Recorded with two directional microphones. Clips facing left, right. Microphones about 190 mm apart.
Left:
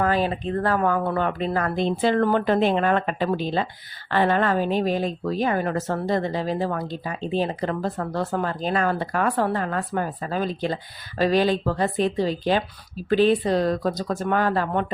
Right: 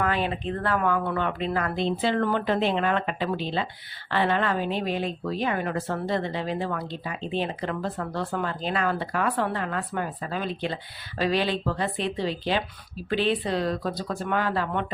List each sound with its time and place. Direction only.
0.0 s speech: 35° left (ahead or behind)